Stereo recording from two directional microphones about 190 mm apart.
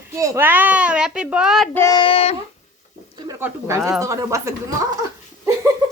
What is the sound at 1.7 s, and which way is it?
Child singing, 15° left (ahead or behind).